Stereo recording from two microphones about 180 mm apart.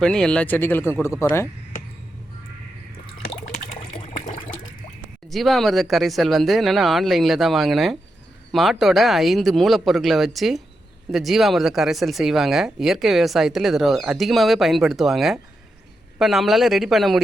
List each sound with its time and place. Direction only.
0.0 s speech: 5° left (ahead or behind)
3.8 s water: 30° left (ahead or behind)
5.3 s speech: centre (ahead or behind)